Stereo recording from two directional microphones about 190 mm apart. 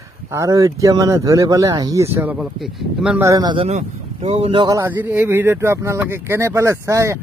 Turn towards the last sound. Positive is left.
turn(degrees=-15)  # may be behind; listen again after turning